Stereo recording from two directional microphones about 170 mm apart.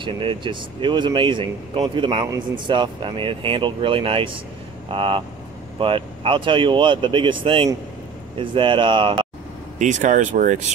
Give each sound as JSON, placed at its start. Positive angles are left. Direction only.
{"t": 0.0, "sound": "speech", "side_deg": -30}
{"t": 9.8, "sound": "speech", "side_deg": -45}